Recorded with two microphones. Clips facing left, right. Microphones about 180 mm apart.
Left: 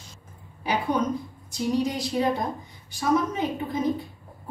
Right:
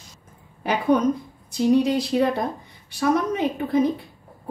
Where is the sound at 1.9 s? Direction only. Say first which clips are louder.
Right 4 dB; 60° right (ahead or behind).